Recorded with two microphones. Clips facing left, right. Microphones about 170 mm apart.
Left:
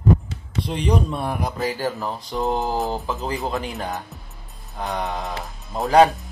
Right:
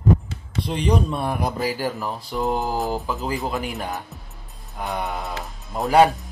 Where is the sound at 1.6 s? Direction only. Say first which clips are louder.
Even; 10° right (ahead or behind).